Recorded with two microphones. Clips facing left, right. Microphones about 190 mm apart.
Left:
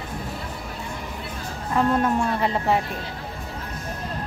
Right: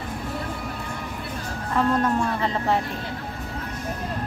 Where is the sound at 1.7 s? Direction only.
10° left (ahead or behind).